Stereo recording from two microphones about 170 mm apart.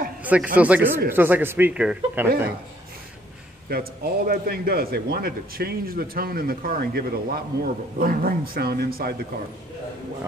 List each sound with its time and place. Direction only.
0.2 s a sound: 10° right (ahead or behind)
0.6 s speech: 10° right (ahead or behind)
3.6 s a man's voice: 60° right (ahead or behind)